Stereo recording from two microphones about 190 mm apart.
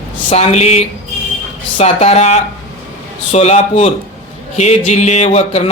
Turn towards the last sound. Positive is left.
turn(degrees=35)  # may be behind; listen again after turning